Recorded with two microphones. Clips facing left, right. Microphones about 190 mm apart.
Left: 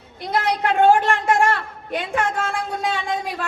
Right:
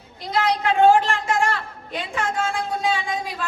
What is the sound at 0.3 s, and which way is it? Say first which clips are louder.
A woman's voice: even; 55° left (ahead or behind).